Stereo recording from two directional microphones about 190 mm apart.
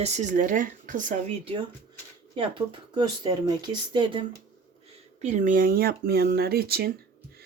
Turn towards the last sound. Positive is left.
turn(degrees=-55)  # may be behind; listen again after turning